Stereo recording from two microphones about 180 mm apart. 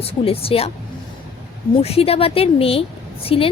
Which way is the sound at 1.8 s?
35° left (ahead or behind).